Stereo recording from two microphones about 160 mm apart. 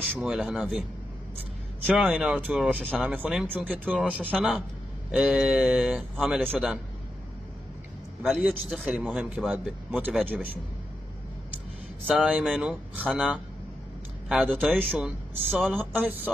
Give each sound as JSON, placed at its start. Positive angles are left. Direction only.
{"t": 0.0, "sound": "a man's voice", "side_deg": 0}
{"t": 1.9, "sound": "a man's voice", "side_deg": -5}
{"t": 8.2, "sound": "a man's voice", "side_deg": 0}
{"t": 12.1, "sound": "speech", "side_deg": -5}
{"t": 15.5, "sound": "a man's voice", "side_deg": 5}
{"t": 15.8, "sound": "speech", "side_deg": -10}